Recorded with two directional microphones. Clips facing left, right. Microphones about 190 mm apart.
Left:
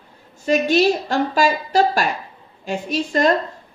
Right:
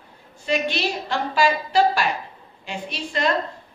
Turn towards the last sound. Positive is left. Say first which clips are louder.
# left 7 dB
turn(degrees=45)  # may be behind; listen again after turning